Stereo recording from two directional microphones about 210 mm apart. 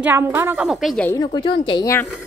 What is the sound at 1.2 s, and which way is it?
Speech, 20° left (ahead or behind).